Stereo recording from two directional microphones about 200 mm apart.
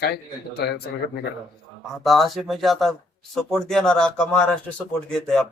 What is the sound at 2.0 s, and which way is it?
A man's voice, centre (ahead or behind).